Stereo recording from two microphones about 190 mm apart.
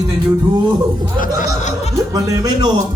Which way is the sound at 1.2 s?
40° left (ahead or behind).